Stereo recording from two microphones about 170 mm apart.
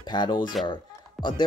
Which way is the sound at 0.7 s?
25° left (ahead or behind).